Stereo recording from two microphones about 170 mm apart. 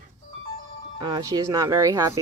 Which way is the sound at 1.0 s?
25° right (ahead or behind).